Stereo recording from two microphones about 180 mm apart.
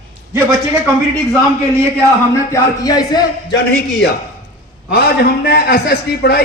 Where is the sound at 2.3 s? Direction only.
20° left (ahead or behind).